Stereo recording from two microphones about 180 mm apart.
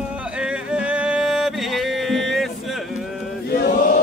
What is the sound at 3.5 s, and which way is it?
Chant, 60° left (ahead or behind).